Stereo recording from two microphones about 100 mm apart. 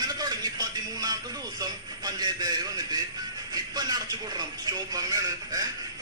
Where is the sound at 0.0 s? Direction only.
40° right (ahead or behind).